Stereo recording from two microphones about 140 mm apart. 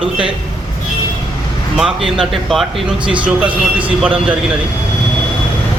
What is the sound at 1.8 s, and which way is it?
A man's voice, centre (ahead or behind).